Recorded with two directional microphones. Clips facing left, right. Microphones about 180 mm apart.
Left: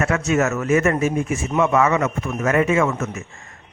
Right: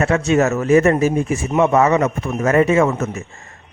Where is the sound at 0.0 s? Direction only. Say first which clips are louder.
Right 4 dB; 30° right (ahead or behind).